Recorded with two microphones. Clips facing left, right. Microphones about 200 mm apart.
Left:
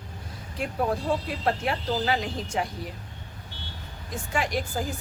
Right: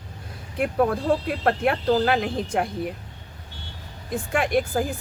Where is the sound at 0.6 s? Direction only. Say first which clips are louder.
Right 5 dB; 55° right (ahead or behind).